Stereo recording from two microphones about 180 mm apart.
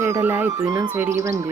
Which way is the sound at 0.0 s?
15° right (ahead or behind).